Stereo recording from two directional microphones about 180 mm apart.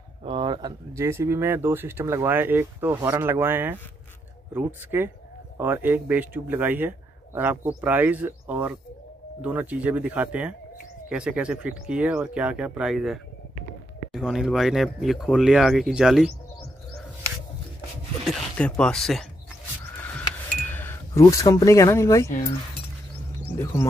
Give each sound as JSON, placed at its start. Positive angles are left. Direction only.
{"t": 0.2, "sound": "speech", "side_deg": -30}
{"t": 18.2, "sound": "speech", "side_deg": 0}
{"t": 20.6, "sound": "speech", "side_deg": 10}
{"t": 23.6, "sound": "speech", "side_deg": 15}